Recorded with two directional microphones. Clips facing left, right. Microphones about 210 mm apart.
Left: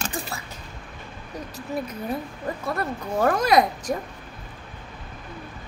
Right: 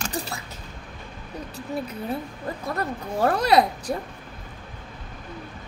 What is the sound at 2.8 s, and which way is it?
Speech, 35° right (ahead or behind).